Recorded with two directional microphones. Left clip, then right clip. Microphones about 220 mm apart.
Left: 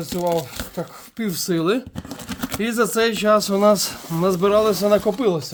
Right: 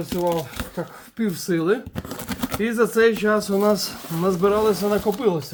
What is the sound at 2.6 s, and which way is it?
Speech, 55° left (ahead or behind).